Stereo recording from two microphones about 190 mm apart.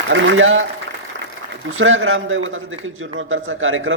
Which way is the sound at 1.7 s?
90° right.